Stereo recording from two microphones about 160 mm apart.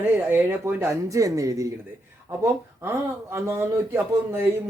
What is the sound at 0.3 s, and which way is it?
Speech, 15° right (ahead or behind).